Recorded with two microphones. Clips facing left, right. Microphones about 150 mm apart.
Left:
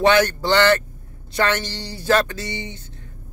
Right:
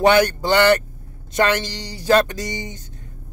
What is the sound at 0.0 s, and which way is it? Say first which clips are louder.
Speech: right 1 dB; 15° right (ahead or behind).